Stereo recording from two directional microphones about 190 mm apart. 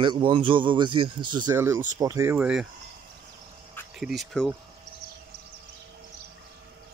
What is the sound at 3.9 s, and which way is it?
Speech, centre (ahead or behind).